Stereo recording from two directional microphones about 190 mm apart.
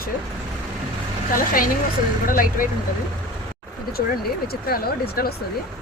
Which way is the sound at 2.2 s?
45° left (ahead or behind).